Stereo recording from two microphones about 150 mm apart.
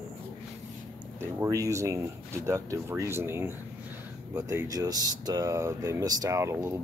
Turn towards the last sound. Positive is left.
turn(degrees=-20)  # may be behind; listen again after turning